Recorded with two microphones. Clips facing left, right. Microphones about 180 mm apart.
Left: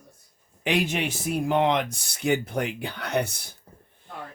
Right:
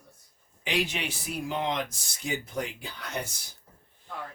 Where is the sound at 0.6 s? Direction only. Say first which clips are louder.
Left 5 dB; 55° left (ahead or behind).